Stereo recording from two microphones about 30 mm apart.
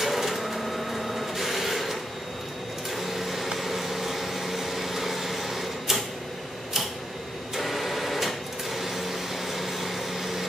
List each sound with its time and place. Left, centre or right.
0.0 s printer: centre
3.0 s a sound: centre
3.5 s vehicle: centre
7.5 s printer: centre